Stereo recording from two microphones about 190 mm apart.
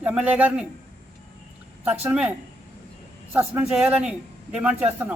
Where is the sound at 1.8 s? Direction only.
10° right (ahead or behind).